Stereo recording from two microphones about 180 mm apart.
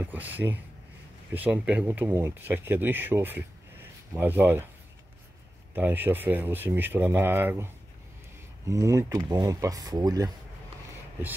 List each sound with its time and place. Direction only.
0.0 s speech: 10° right (ahead or behind)
5.8 s speech: 10° right (ahead or behind)